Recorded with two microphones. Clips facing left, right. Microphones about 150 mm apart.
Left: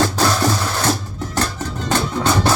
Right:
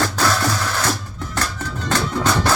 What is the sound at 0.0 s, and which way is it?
Music, 25° left (ahead or behind).